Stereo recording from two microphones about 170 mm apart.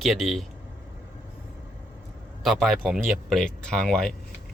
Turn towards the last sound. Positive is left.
turn(degrees=5)  # may be behind; listen again after turning